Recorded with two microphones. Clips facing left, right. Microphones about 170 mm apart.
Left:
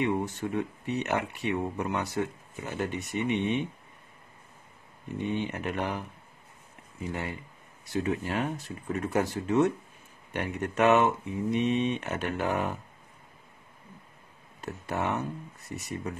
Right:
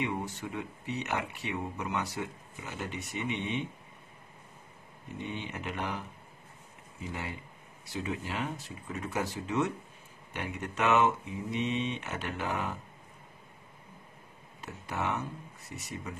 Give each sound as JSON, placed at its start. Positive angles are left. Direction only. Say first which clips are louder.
{"t": 0.0, "sound": "speech", "louder": "left 6 dB", "side_deg": 50}
{"t": 5.2, "sound": "speech", "louder": "left 7 dB", "side_deg": 55}
{"t": 7.9, "sound": "speech", "louder": "left 6 dB", "side_deg": 50}
{"t": 14.6, "sound": "speech", "louder": "left 4 dB", "side_deg": 50}